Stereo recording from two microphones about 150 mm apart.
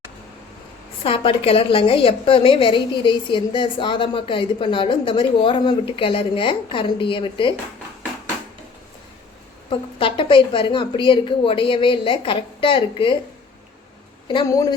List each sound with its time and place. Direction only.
1.0 s a woman's voice: 40° left (ahead or behind)
9.6 s a woman's voice: 35° left (ahead or behind)
14.3 s speech: 30° left (ahead or behind)